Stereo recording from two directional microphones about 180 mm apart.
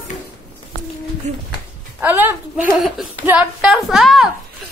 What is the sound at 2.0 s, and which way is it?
A woman's voice, 10° right (ahead or behind).